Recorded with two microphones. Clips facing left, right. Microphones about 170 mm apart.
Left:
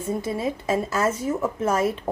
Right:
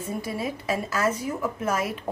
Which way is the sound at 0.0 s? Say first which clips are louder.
Left 4 dB; 25° left (ahead or behind).